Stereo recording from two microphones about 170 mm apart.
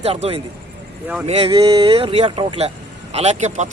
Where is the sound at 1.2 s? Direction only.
35° right (ahead or behind).